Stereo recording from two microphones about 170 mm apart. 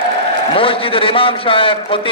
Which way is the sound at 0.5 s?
30° left (ahead or behind).